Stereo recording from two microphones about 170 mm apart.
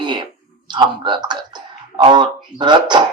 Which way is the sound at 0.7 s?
25° right (ahead or behind).